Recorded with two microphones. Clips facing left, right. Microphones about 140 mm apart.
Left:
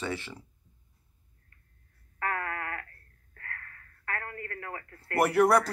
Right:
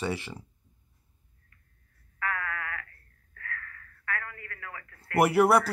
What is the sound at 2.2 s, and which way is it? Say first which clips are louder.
Sheep: left 1 dB; 40° left (ahead or behind).